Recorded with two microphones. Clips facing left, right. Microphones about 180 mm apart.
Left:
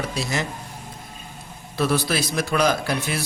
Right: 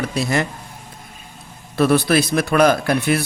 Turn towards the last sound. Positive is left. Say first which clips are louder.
# right 7 dB
turn(degrees=-60)  # may be behind; listen again after turning